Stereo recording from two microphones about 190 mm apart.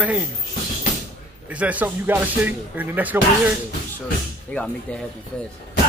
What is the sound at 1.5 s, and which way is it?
Speech, 5° right (ahead or behind).